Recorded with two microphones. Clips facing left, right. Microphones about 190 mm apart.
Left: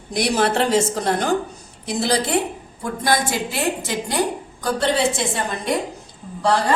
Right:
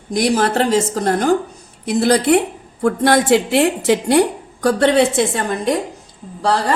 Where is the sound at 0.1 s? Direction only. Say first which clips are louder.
Right 3 dB; 45° right (ahead or behind).